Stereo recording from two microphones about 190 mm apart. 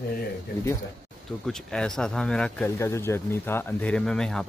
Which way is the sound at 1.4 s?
5° left (ahead or behind).